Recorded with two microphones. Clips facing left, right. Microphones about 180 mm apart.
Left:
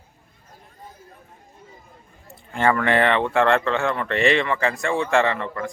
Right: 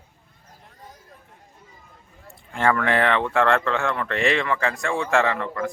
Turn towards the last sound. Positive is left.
turn(degrees=0)  # may be behind; listen again after turning